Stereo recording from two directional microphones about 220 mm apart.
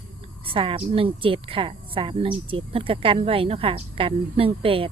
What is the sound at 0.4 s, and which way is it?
A woman's voice, 25° right (ahead or behind).